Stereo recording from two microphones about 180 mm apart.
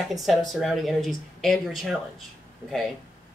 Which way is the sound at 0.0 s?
Centre (ahead or behind).